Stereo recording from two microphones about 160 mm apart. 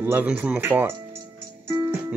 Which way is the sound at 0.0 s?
10° right (ahead or behind).